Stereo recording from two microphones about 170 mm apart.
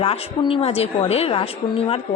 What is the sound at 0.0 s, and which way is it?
A woman's voice, 35° left (ahead or behind).